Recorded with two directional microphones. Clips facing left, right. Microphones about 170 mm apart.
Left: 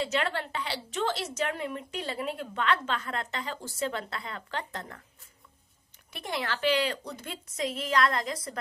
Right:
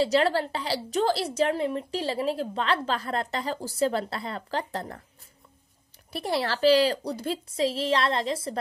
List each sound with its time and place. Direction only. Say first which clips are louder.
0.0 s a woman's voice: right 7 dB; 35° right (ahead or behind)
6.1 s a woman's voice: right 6 dB; 35° right (ahead or behind)